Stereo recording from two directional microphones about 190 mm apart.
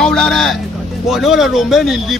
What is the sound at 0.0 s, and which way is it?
Speech, 5° left (ahead or behind).